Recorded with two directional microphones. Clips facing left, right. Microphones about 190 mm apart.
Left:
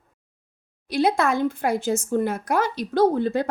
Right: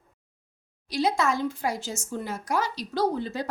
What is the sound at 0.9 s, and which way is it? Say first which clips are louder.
Speech: left 4 dB; 55° left (ahead or behind).